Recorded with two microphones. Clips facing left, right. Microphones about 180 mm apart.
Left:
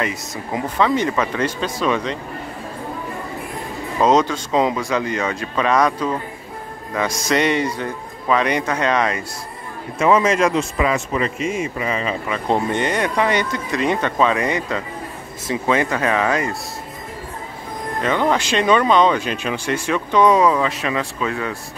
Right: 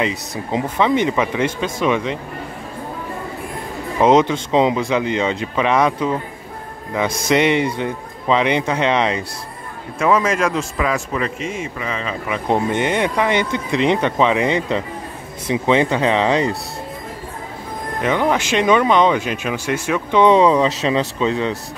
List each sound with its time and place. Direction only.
0.0 s speech: 20° right (ahead or behind)
4.0 s speech: 25° right (ahead or behind)
7.2 s speech: 20° right (ahead or behind)
9.9 s speech: 5° left (ahead or behind)
12.3 s speech: 15° right (ahead or behind)
18.0 s speech: 10° right (ahead or behind)
20.1 s speech: 25° right (ahead or behind)